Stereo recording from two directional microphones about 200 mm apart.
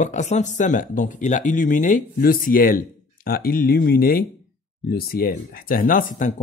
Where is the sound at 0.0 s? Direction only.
35° left (ahead or behind).